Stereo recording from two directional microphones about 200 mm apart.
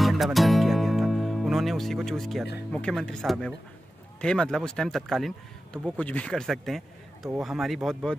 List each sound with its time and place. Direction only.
0.0 s music: centre (ahead or behind)
2.7 s speech: 5° left (ahead or behind)